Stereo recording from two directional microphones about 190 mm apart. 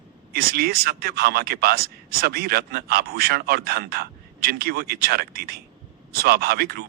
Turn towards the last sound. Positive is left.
turn(degrees=-55)  # may be behind; listen again after turning